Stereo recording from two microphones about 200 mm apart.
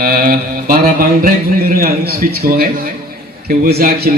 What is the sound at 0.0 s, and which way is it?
Mantra, 50° right (ahead or behind).